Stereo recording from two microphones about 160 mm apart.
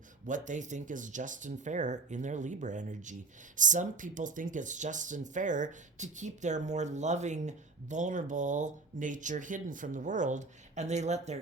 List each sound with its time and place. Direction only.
0.3 s speech: 50° right (ahead or behind)